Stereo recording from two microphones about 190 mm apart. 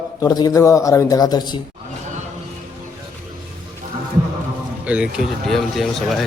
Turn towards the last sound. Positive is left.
turn(degrees=0)  # may be behind; listen again after turning